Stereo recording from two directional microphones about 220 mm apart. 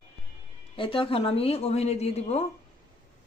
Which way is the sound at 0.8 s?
25° left (ahead or behind).